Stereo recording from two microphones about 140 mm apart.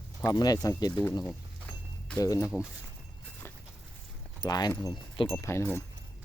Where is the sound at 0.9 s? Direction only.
15° left (ahead or behind).